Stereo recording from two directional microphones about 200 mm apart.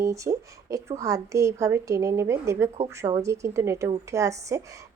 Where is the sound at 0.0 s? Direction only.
15° right (ahead or behind).